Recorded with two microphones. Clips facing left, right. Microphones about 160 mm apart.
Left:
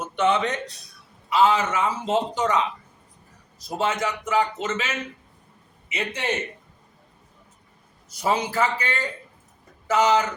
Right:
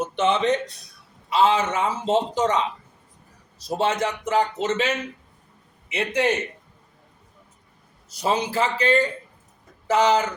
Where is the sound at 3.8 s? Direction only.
35° right (ahead or behind).